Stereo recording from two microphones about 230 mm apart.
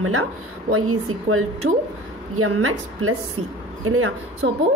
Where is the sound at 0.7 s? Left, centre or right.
Right.